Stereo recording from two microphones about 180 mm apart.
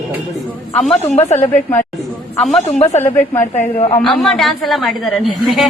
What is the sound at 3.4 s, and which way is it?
Speech, 35° left (ahead or behind).